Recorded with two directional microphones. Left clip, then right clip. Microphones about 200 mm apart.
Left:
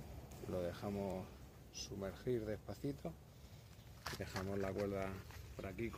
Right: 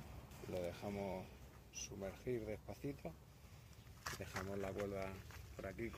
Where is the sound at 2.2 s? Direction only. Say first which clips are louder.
Left 4 dB; 25° left (ahead or behind).